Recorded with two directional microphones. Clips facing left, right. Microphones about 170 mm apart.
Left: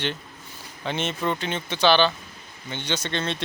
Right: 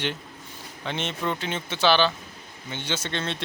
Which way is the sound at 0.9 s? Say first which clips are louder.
Left 2 dB; 5° left (ahead or behind).